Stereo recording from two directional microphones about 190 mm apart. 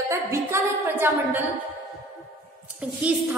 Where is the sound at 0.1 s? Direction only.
15° right (ahead or behind).